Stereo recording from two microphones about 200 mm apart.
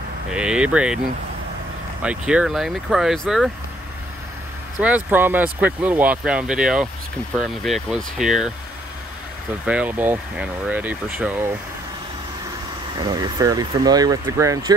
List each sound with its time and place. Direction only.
0.3 s speech: 5° right (ahead or behind)
2.0 s speech: 5° right (ahead or behind)
4.7 s speech: 5° right (ahead or behind)
9.7 s speech: 5° right (ahead or behind)
13.0 s speech: 20° right (ahead or behind)